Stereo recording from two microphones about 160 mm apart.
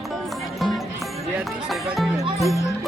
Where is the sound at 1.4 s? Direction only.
Centre (ahead or behind).